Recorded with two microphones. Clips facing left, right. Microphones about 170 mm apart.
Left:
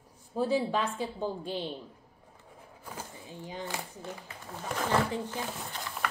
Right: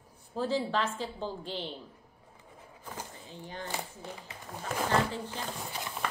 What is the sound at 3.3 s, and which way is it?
Speech, 10° left (ahead or behind).